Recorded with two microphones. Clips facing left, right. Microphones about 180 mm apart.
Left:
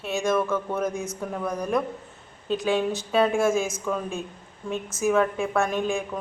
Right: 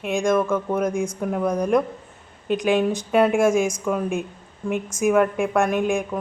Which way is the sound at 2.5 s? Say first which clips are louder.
Right 4 dB; 15° right (ahead or behind).